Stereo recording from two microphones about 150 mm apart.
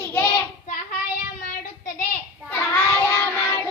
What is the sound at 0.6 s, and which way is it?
Child singing, 65° left (ahead or behind).